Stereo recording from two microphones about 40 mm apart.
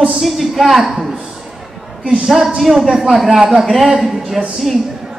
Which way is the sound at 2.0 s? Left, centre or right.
Right.